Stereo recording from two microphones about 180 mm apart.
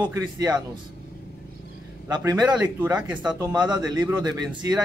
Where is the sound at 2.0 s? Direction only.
20° right (ahead or behind).